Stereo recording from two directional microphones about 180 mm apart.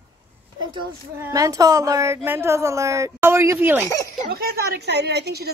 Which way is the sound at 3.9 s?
20° left (ahead or behind).